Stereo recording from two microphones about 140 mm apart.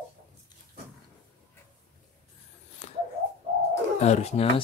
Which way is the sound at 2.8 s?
55° left (ahead or behind).